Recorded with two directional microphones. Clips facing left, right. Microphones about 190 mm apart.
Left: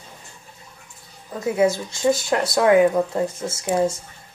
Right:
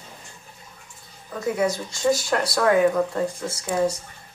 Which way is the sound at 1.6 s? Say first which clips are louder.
Left 8 dB; 25° left (ahead or behind).